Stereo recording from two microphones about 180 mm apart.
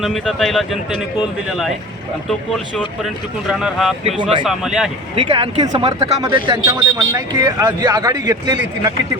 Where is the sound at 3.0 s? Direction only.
Centre (ahead or behind).